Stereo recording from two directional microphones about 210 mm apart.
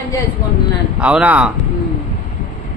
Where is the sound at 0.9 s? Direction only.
5° right (ahead or behind).